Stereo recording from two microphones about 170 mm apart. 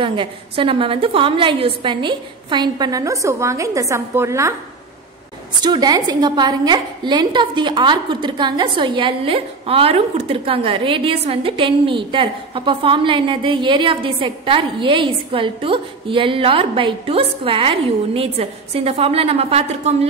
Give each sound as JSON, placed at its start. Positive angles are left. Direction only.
{"t": 0.0, "sound": "a woman's voice", "side_deg": -30}
{"t": 5.6, "sound": "a woman's voice", "side_deg": -25}